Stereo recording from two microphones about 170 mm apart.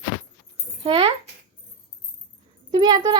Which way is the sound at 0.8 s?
35° right (ahead or behind).